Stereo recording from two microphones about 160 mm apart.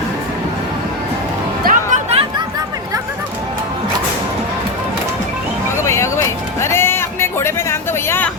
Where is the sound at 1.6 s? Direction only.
65° right (ahead or behind).